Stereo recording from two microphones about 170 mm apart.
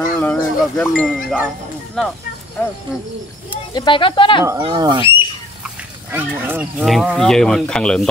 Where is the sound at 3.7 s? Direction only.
30° left (ahead or behind).